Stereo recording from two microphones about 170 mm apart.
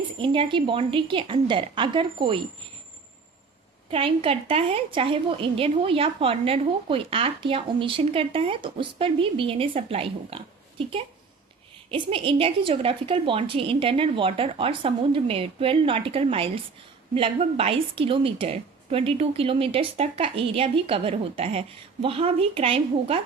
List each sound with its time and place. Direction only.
0.2 s a woman's voice: 30° right (ahead or behind)
3.9 s a woman's voice: 35° right (ahead or behind)